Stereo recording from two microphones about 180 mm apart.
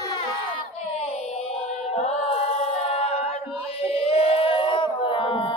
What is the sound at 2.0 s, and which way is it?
Chant, 35° left (ahead or behind).